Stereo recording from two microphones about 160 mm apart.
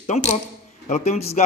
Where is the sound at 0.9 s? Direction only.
45° left (ahead or behind).